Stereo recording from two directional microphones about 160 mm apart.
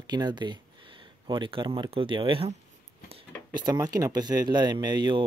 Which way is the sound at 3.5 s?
25° right (ahead or behind).